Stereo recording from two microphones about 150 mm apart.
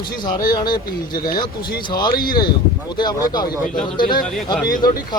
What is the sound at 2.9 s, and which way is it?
Speech, 25° left (ahead or behind).